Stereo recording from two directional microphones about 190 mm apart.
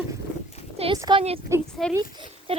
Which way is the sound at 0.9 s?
20° right (ahead or behind).